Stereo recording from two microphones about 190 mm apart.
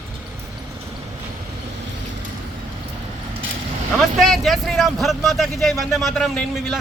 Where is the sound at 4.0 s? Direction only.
Centre (ahead or behind).